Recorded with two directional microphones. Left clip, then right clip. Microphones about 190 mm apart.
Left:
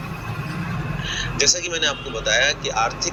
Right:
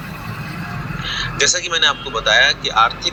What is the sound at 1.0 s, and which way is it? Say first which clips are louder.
Vehicle: right 3 dB; 40° right (ahead or behind).